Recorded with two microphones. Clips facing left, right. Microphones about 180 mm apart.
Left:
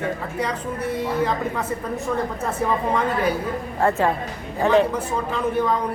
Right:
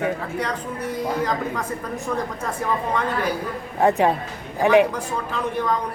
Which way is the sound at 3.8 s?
15° right (ahead or behind).